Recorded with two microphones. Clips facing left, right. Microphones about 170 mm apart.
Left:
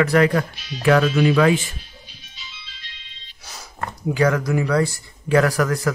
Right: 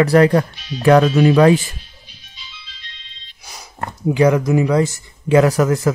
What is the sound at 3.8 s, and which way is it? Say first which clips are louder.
Speech: right 5 dB; 20° right (ahead or behind).